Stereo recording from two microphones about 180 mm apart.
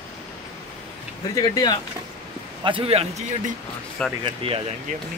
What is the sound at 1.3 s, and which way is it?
Speech, 20° left (ahead or behind).